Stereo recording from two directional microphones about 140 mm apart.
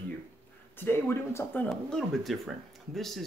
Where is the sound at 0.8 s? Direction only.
15° left (ahead or behind).